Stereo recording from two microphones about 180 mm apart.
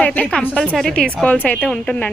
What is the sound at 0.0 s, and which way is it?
Speech, 10° left (ahead or behind).